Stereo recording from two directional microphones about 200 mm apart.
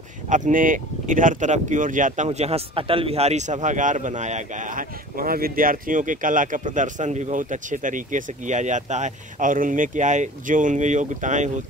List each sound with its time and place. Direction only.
0.3 s speech: 40° right (ahead or behind)